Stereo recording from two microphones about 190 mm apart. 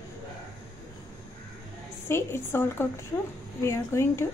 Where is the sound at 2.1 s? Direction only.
10° left (ahead or behind).